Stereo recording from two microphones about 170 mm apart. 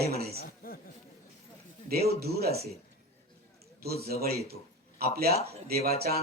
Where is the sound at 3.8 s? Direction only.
65° right (ahead or behind).